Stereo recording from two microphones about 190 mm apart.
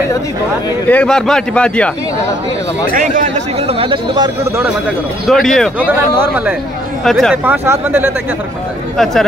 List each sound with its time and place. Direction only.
0.8 s a man's voice: 5° left (ahead or behind)
2.9 s speech: 40° right (ahead or behind); by 4.6 s 25° right (ahead or behind)
5.2 s a man's voice: centre (ahead or behind)
5.9 s speech: 10° right (ahead or behind)
7.1 s a man's voice: centre (ahead or behind)
7.4 s speech: 10° right (ahead or behind)
8.9 s a man's voice: centre (ahead or behind)